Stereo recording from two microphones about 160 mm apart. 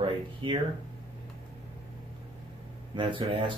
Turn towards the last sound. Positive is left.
turn(degrees=-30)  # may be behind; listen again after turning